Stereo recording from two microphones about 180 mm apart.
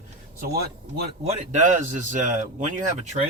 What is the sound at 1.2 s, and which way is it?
A man's voice, 40° right (ahead or behind).